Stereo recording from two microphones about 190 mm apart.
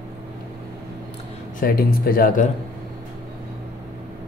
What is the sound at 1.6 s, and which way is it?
Speech, 50° left (ahead or behind).